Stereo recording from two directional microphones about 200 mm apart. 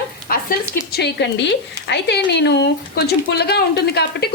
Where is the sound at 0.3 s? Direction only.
45° left (ahead or behind).